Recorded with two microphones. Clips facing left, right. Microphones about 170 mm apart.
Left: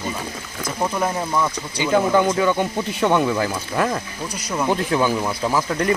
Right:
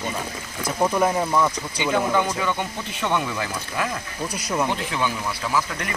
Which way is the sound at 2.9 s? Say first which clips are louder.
Left 6 dB; 35° left (ahead or behind).